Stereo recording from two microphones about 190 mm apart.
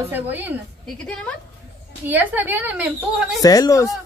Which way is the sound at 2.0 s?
10° right (ahead or behind).